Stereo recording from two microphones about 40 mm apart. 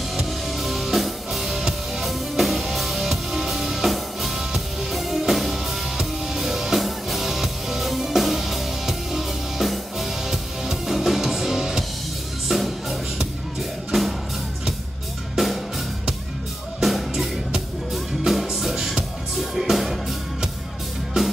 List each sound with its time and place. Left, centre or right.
0.1 s music: centre
12.4 s music: centre
15.3 s music: centre
16.8 s music: centre
21.2 s music: centre